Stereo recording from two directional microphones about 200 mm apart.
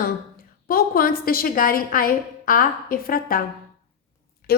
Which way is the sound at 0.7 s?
45° left (ahead or behind).